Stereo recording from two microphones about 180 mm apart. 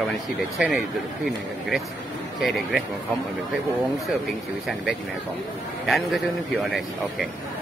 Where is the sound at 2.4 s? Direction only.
Centre (ahead or behind).